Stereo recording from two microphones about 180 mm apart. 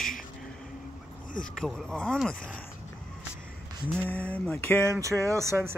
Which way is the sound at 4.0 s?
10° left (ahead or behind).